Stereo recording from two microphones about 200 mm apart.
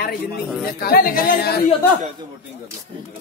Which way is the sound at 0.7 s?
50° left (ahead or behind).